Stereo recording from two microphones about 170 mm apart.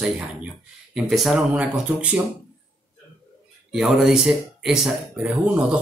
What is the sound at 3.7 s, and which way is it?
Speech, centre (ahead or behind).